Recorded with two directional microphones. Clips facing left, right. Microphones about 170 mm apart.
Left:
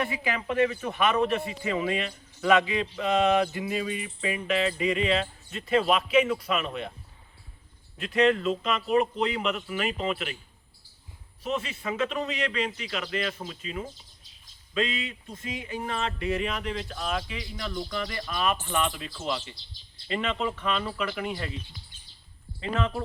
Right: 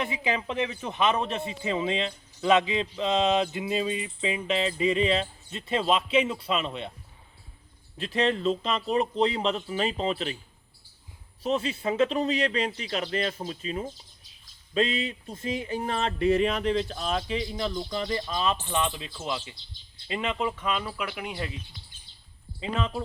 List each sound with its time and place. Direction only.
0.0 s speech: 20° right (ahead or behind)
7.9 s a man's voice: 30° right (ahead or behind)
11.4 s a man's voice: 35° right (ahead or behind); by 21.5 s 15° right (ahead or behind)
22.7 s speech: 15° right (ahead or behind)